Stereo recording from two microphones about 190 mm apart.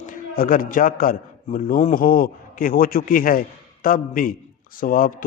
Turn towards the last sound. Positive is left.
turn(degrees=45)  # may be behind; listen again after turning